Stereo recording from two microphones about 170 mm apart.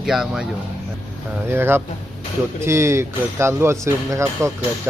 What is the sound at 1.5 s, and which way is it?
Speech, 15° right (ahead or behind).